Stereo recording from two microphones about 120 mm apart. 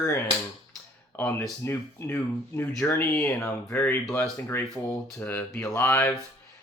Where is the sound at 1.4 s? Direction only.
20° left (ahead or behind).